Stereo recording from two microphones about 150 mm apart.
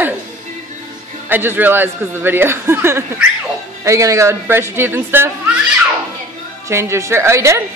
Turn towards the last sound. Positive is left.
turn(degrees=-20)  # may be behind; listen again after turning